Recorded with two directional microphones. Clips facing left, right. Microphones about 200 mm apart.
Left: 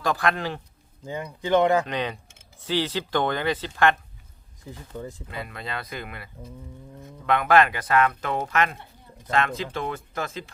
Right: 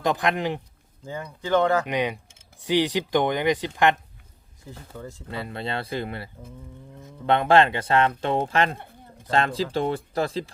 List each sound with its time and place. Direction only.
0.0 s speech: 20° right (ahead or behind)
1.0 s speech: 15° left (ahead or behind)
1.9 s speech: 15° right (ahead or behind)
4.9 s speech: 15° left (ahead or behind)
5.3 s speech: 30° right (ahead or behind)